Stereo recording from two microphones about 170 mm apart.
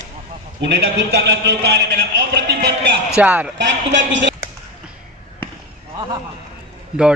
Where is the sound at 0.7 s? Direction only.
85° right.